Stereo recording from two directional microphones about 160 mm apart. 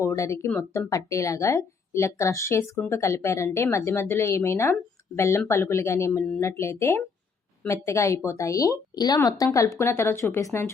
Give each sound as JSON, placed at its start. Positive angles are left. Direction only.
{"t": 0.0, "sound": "a woman's voice", "side_deg": 20}